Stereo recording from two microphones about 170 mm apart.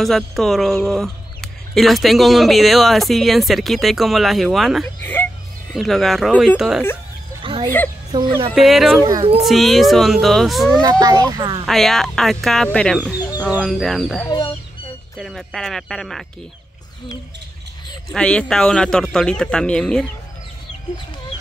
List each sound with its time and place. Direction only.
0.0 s speech: centre (ahead or behind)
5.0 s music: 10° left (ahead or behind)
5.8 s speech: centre (ahead or behind)
7.4 s a sound: 30° right (ahead or behind)
8.1 s a child's voice: 30° right (ahead or behind)
8.5 s speech: centre (ahead or behind)
10.8 s a child's voice: 25° right (ahead or behind)
11.6 s speech: centre (ahead or behind)
18.1 s speech: 5° left (ahead or behind)